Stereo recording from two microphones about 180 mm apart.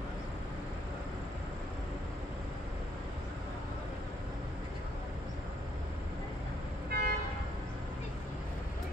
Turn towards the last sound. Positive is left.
turn(degrees=-60)  # may be behind; listen again after turning